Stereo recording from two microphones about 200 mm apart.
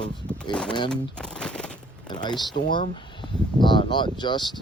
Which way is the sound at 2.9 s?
25° left (ahead or behind).